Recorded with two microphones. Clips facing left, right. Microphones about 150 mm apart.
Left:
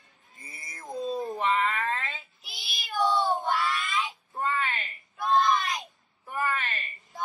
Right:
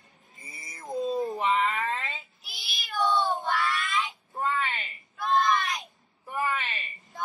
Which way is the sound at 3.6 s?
Centre (ahead or behind).